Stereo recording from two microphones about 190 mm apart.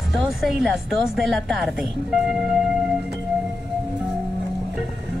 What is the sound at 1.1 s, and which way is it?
Speech, centre (ahead or behind).